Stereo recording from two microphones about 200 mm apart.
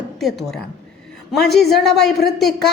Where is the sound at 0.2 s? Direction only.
Centre (ahead or behind).